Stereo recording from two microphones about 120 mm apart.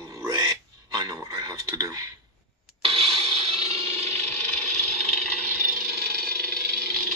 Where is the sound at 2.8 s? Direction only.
50° right (ahead or behind).